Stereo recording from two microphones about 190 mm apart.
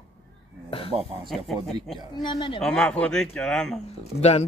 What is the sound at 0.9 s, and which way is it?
Speech, 30° right (ahead or behind).